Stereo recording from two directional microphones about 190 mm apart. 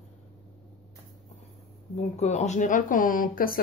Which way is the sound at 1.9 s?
35° left (ahead or behind).